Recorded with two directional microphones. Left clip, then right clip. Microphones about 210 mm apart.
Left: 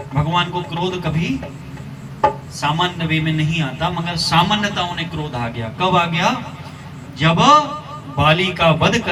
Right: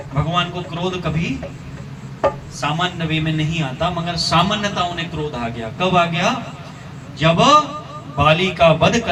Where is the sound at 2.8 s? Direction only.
20° left (ahead or behind).